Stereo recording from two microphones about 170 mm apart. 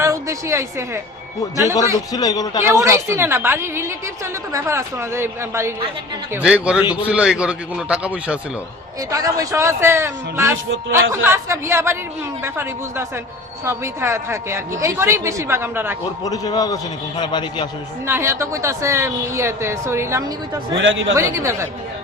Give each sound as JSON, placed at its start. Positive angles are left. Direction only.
{"t": 0.0, "sound": "a woman's voice", "side_deg": -20}
{"t": 2.1, "sound": "a man's voice", "side_deg": 20}
{"t": 2.6, "sound": "a woman's voice", "side_deg": -15}
{"t": 6.4, "sound": "a man's voice", "side_deg": -5}
{"t": 9.0, "sound": "a woman's voice", "side_deg": -20}
{"t": 16.2, "sound": "a man's voice", "side_deg": 20}
{"t": 18.0, "sound": "a woman's voice", "side_deg": -15}